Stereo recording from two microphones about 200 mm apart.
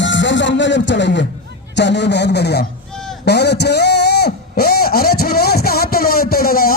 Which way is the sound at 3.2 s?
55° left (ahead or behind).